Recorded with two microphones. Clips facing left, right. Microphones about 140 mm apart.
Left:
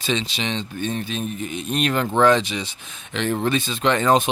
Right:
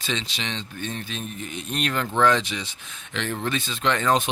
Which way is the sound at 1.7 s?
15° left (ahead or behind).